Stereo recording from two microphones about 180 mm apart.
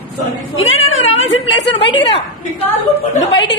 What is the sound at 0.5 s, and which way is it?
Speech, 90° left.